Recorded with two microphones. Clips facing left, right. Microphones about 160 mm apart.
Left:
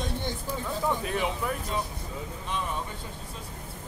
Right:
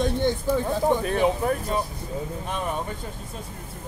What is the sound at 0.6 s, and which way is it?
Speech, 45° right (ahead or behind).